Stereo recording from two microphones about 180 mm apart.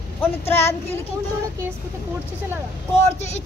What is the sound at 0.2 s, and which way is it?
Speech, 10° left (ahead or behind).